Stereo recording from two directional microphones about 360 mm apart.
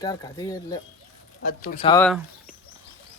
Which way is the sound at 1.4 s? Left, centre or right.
Left.